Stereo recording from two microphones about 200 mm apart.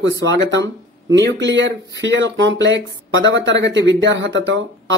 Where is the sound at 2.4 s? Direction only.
65° right (ahead or behind).